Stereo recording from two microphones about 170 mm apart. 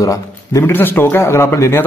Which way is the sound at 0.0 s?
20° left (ahead or behind).